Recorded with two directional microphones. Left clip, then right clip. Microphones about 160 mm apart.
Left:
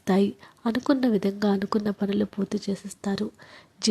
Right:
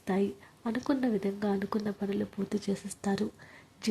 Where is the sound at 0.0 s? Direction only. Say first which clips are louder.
Left 7 dB; 35° left (ahead or behind).